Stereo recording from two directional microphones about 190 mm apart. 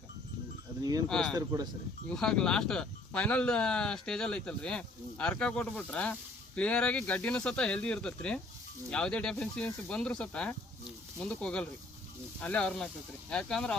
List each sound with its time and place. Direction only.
0.8 s speech: 20° right (ahead or behind)
1.0 s speech: 5° left (ahead or behind)